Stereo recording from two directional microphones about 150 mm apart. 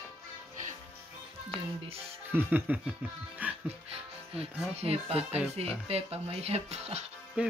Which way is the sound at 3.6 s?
40° right (ahead or behind).